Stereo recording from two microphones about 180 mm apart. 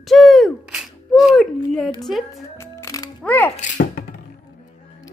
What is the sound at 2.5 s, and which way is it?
Music, 15° left (ahead or behind).